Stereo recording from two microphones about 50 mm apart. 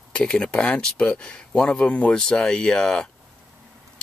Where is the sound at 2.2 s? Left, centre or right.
Centre.